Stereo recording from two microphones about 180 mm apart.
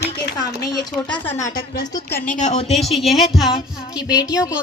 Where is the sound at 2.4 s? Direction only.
40° left (ahead or behind).